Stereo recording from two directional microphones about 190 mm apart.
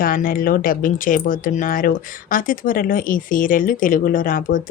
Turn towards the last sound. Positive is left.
turn(degrees=45)  # may be behind; listen again after turning